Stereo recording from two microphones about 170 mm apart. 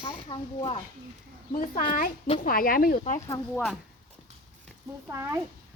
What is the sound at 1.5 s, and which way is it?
Speech, 50° left (ahead or behind).